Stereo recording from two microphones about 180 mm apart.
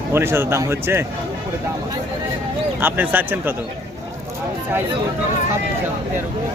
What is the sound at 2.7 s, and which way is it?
Speech, 10° right (ahead or behind).